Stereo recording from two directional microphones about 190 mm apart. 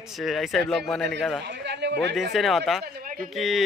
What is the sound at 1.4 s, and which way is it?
Speech, 65° right (ahead or behind).